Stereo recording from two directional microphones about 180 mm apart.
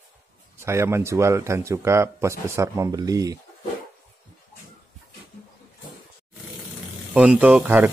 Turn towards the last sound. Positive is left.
turn(degrees=-10)  # may be behind; listen again after turning